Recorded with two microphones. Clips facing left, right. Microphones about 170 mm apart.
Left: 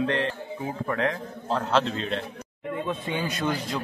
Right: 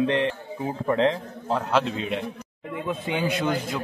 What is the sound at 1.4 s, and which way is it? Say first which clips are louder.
Speech: right 1 dB; 10° right (ahead or behind).